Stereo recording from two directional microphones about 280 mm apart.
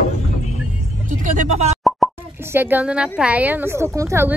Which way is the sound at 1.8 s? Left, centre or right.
Centre.